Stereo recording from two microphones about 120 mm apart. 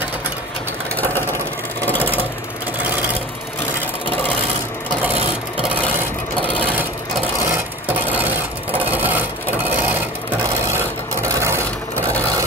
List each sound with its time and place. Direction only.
0.9 s vehicle: 15° left (ahead or behind)
7.9 s filing: 15° right (ahead or behind)
10.4 s a sound: 25° right (ahead or behind)